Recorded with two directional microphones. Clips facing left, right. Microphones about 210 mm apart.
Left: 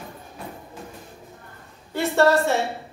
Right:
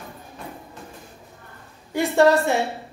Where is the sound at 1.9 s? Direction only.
15° right (ahead or behind).